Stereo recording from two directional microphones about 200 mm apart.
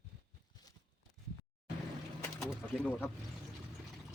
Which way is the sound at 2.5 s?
5° left (ahead or behind).